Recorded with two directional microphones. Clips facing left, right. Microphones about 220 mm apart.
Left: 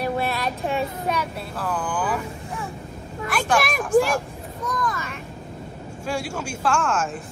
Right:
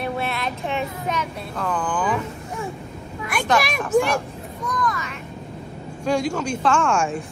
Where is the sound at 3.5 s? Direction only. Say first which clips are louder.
Left 1 dB; centre (ahead or behind).